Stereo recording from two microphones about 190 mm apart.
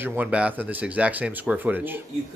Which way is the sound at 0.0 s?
10° right (ahead or behind).